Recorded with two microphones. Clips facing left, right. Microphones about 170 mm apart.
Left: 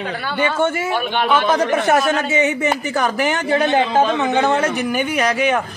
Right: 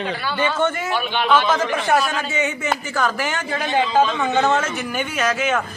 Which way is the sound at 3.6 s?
60° left (ahead or behind).